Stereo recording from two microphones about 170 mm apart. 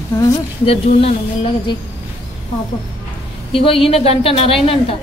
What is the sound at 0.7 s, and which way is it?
A woman's voice, 35° left (ahead or behind).